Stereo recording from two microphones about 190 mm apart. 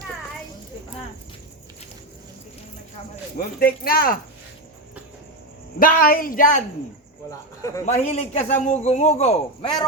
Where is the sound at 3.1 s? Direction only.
50° left (ahead or behind).